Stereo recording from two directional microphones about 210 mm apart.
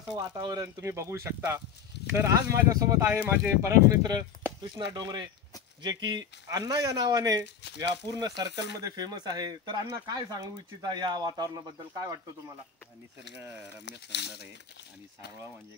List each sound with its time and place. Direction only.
0.1 s speech: 20° right (ahead or behind)
13.8 s speech: 55° left (ahead or behind)